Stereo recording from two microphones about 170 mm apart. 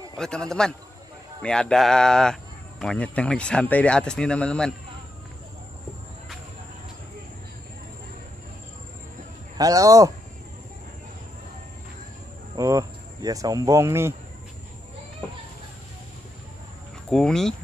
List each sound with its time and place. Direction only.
0.2 s speech: 5° left (ahead or behind)
9.6 s speech: 20° right (ahead or behind)
12.5 s speech: 20° right (ahead or behind)
17.1 s speech: 5° left (ahead or behind)